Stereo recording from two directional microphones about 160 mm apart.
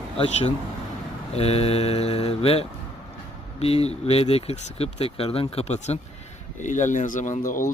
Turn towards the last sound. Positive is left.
turn(degrees=60)  # may be behind; listen again after turning